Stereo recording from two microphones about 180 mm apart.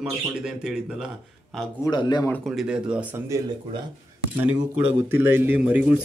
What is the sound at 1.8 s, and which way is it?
Speech, 25° left (ahead or behind).